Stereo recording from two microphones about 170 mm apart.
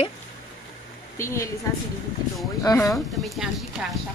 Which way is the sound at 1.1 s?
15° left (ahead or behind).